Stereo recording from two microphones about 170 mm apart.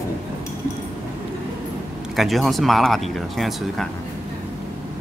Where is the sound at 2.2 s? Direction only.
Centre (ahead or behind).